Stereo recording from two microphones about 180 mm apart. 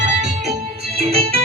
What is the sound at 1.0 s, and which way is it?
Music, 35° right (ahead or behind).